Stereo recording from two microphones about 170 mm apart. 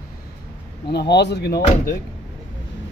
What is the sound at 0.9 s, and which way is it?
Speech, 80° left.